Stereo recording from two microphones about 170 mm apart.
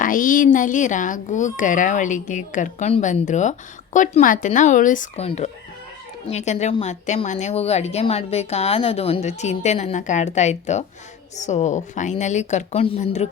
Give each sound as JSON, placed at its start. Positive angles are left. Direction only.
{"t": 0.0, "sound": "a woman's voice", "side_deg": 55}